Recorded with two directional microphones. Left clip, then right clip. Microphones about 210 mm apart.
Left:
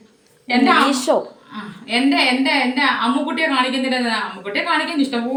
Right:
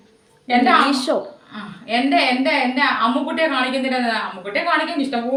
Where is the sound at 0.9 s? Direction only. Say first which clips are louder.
Left 2 dB; 5° left (ahead or behind).